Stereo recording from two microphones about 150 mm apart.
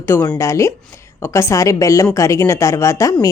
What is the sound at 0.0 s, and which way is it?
Speech, 15° left (ahead or behind).